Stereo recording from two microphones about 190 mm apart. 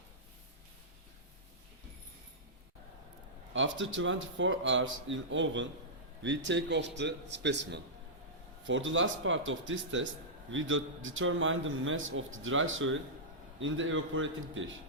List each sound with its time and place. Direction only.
3.5 s a man's voice: 85° right; by 7.8 s 65° right (ahead or behind)
8.6 s a man's voice: 80° right